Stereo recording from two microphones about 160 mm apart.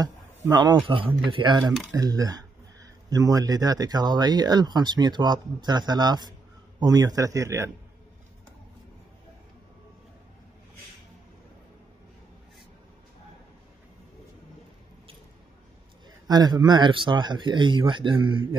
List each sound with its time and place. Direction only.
0.0 s a sound: 25° right (ahead or behind)
0.8 s speech: 30° right (ahead or behind)
16.3 s speech: 25° right (ahead or behind)